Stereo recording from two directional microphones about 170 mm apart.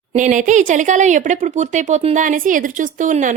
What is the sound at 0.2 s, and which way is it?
Speech, 50° right (ahead or behind).